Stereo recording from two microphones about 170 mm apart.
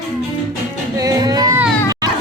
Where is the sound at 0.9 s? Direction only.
20° right (ahead or behind).